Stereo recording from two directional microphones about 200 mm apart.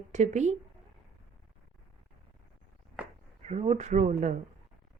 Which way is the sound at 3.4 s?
35° right (ahead or behind).